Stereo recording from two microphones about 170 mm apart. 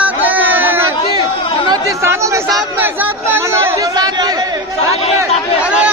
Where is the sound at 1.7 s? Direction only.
20° right (ahead or behind).